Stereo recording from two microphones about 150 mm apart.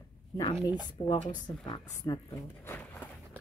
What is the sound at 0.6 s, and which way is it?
Speech, 30° left (ahead or behind).